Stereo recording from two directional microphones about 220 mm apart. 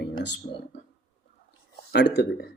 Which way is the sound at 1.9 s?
50° left (ahead or behind).